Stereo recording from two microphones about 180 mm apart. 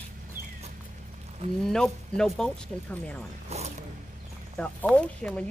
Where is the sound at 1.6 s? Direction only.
5° left (ahead or behind).